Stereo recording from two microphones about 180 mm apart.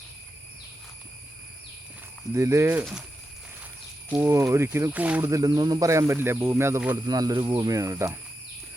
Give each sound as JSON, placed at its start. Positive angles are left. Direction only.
{"t": 2.3, "sound": "speech", "side_deg": -15}
{"t": 4.1, "sound": "speech", "side_deg": -15}